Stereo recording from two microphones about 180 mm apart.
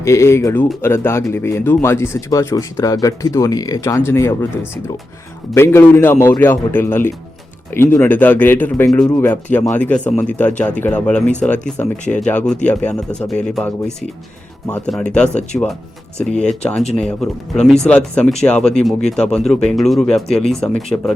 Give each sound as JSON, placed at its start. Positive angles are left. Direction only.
{"t": 0.0, "sound": "speech", "side_deg": 15}
{"t": 16.4, "sound": "speech", "side_deg": 5}